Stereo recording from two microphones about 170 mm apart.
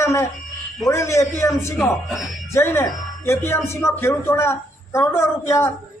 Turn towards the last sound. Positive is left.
turn(degrees=15)  # may be behind; listen again after turning